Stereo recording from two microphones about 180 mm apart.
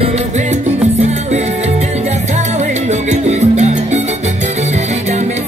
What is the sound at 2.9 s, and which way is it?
Salsa music, 40° right (ahead or behind).